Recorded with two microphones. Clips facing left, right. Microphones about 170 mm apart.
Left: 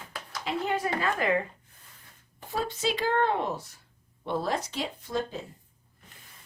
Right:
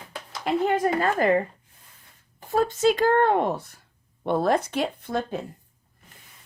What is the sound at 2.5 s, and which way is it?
Speech, 50° right (ahead or behind).